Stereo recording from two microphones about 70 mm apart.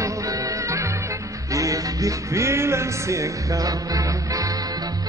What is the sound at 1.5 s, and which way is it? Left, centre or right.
Music, right.